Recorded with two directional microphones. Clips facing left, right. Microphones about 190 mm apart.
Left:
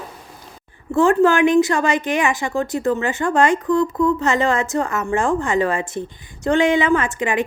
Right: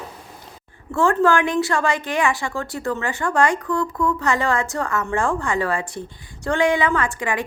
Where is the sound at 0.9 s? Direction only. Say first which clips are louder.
Left 3 dB; 20° left (ahead or behind).